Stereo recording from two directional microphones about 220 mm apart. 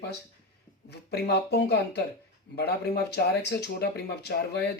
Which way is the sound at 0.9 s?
50° left (ahead or behind).